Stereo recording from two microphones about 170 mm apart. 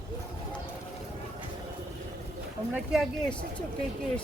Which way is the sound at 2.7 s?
10° right (ahead or behind).